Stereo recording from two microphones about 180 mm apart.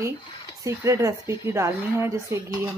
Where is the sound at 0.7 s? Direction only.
15° right (ahead or behind).